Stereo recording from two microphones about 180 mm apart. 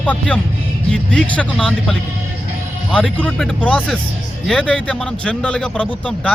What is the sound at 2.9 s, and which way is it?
A man's voice, 5° left (ahead or behind).